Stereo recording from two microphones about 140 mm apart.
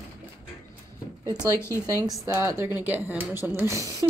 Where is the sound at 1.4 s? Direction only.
20° left (ahead or behind).